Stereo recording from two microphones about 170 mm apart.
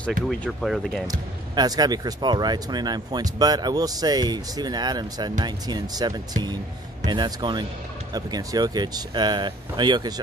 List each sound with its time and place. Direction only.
0.3 s speech: 5° left (ahead or behind)
1.5 s speech: 25° right (ahead or behind)